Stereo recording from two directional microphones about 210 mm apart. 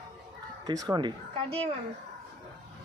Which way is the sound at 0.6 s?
20° right (ahead or behind).